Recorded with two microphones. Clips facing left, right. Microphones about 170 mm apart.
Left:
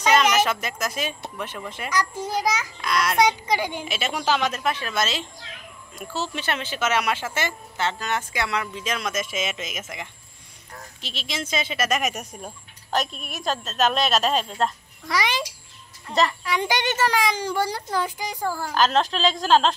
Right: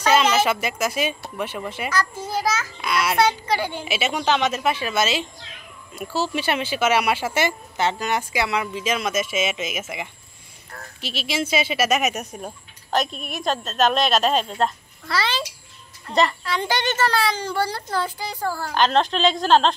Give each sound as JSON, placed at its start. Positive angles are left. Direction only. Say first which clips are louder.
{"t": 0.1, "sound": "speech", "louder": "right 2 dB", "side_deg": -10}
{"t": 1.9, "sound": "a child's voice", "louder": "left 2 dB", "side_deg": 15}
{"t": 2.8, "sound": "a child's voice", "louder": "right 1 dB", "side_deg": -5}
{"t": 3.2, "sound": "a child's voice", "louder": "even", "side_deg": 15}
{"t": 3.8, "sound": "speech", "louder": "right 3 dB", "side_deg": -5}
{"t": 15.0, "sound": "a child's voice", "louder": "even", "side_deg": 15}
{"t": 18.8, "sound": "speech", "louder": "right 2 dB", "side_deg": 0}